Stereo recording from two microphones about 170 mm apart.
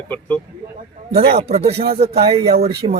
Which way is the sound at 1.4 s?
35° right (ahead or behind).